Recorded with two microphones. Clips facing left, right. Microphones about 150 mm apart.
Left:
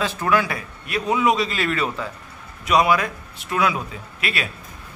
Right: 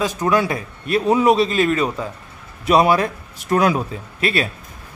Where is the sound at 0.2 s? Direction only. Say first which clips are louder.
Right 2 dB; 20° right (ahead or behind).